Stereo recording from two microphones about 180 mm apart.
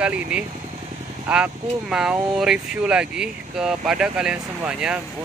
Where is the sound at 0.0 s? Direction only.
5° right (ahead or behind).